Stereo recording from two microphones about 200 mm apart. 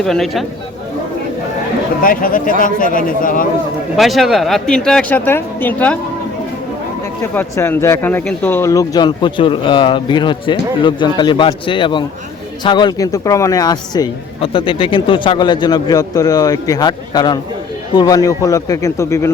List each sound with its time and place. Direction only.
0.0 s speech: centre (ahead or behind)
2.0 s speech: 45° left (ahead or behind)
3.9 s speech: centre (ahead or behind)
7.3 s a man's voice: 10° left (ahead or behind)